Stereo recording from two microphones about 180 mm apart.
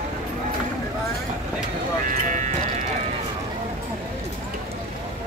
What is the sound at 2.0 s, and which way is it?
Clip-clop, 45° right (ahead or behind).